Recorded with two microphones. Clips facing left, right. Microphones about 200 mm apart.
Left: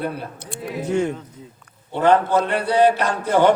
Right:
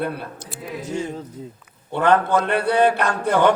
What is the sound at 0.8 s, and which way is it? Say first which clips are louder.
Speech: left 6 dB; 60° left (ahead or behind).